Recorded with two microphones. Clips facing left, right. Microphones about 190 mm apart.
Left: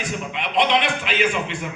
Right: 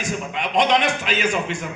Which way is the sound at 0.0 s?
45° right (ahead or behind).